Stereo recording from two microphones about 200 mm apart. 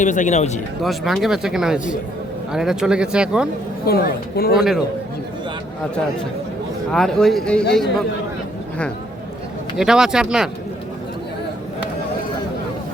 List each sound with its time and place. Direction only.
0.0 s speech: 40° left (ahead or behind)
0.8 s speech: centre (ahead or behind)
3.8 s a woman's voice: 50° left (ahead or behind)
4.5 s speech: centre (ahead or behind)
6.9 s speech: centre (ahead or behind)
9.7 s speech: 5° right (ahead or behind)